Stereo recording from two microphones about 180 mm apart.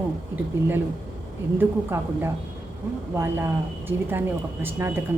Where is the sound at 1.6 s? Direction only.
15° right (ahead or behind).